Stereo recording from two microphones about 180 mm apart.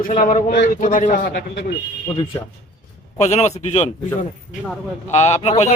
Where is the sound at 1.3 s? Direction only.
70° left (ahead or behind).